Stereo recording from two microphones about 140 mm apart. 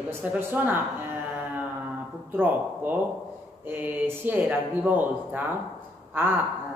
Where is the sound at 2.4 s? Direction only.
10° right (ahead or behind).